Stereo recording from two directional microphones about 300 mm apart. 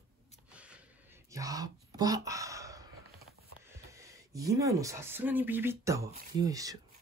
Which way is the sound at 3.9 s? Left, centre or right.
Centre.